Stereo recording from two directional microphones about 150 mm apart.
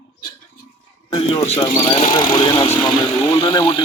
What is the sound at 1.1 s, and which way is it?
Speech, 35° left (ahead or behind).